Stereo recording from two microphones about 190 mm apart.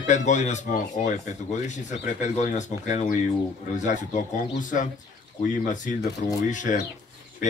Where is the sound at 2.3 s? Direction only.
40° left (ahead or behind).